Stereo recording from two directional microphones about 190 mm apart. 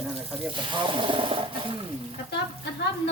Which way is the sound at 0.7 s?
25° right (ahead or behind).